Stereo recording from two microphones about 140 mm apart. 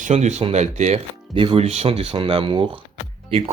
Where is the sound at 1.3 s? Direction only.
40° right (ahead or behind).